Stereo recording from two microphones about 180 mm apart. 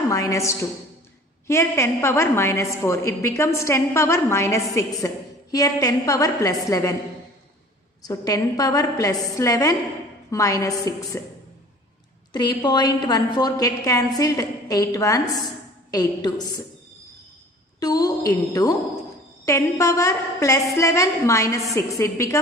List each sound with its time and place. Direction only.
0.1 s a woman's voice: 15° left (ahead or behind)
8.0 s a woman's voice: 20° left (ahead or behind)
12.3 s a woman's voice: 25° left (ahead or behind)
17.7 s a woman's voice: 20° left (ahead or behind)